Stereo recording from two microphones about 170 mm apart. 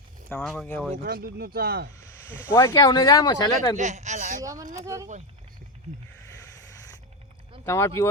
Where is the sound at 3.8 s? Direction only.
45° right (ahead or behind).